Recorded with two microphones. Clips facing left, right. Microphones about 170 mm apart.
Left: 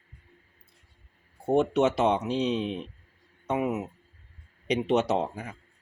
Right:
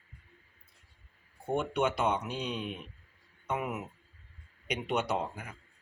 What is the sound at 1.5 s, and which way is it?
Speech, 20° left (ahead or behind).